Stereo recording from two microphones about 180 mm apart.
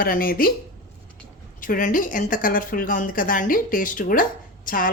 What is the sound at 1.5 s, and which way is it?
Speech, 50° left (ahead or behind).